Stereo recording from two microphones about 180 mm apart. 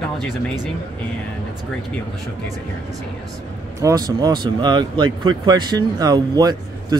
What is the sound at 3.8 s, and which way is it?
Speech, 20° right (ahead or behind).